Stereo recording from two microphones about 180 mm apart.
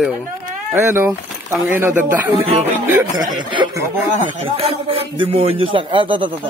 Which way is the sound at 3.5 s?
20° right (ahead or behind).